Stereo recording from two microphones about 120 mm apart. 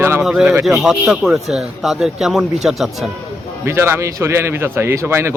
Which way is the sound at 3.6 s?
20° right (ahead or behind).